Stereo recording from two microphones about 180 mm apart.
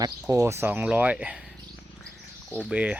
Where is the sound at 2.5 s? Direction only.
5° right (ahead or behind).